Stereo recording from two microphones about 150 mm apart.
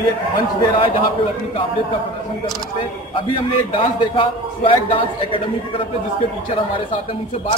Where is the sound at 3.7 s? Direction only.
35° left (ahead or behind).